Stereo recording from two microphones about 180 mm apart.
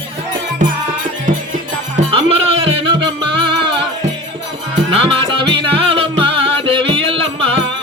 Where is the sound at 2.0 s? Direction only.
30° right (ahead or behind).